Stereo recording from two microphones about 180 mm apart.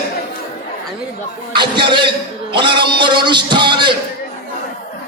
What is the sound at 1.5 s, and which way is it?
A man's voice, 25° right (ahead or behind).